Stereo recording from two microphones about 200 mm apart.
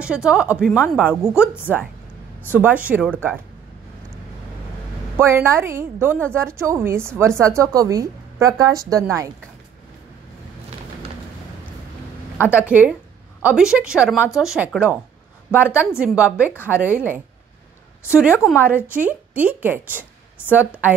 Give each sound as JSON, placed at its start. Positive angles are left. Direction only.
{"t": 0.0, "sound": "a woman's voice", "side_deg": -5}
{"t": 5.1, "sound": "a woman's voice", "side_deg": -10}
{"t": 12.6, "sound": "a woman's voice", "side_deg": -10}
{"t": 18.3, "sound": "speech", "side_deg": 10}
{"t": 18.6, "sound": "a woman's voice", "side_deg": -10}